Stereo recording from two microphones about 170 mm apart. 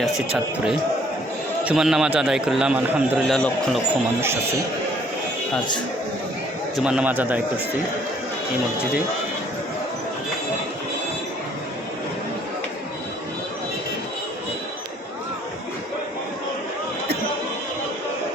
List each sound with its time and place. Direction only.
0.3 s a man's voice: 5° right (ahead or behind)
6.7 s a man's voice: 5° right (ahead or behind)